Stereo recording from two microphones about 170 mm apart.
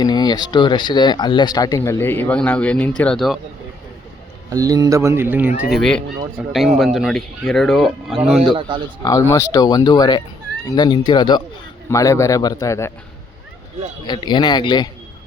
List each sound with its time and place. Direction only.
0.0 s speech: 25° left (ahead or behind); by 3.4 s centre (ahead or behind)
4.4 s speech: 20° right (ahead or behind)
5.6 s speech: centre (ahead or behind)
8.5 s speech: 30° right (ahead or behind)
9.0 s speech: 20° left (ahead or behind)
14.1 s speech: 25° left (ahead or behind)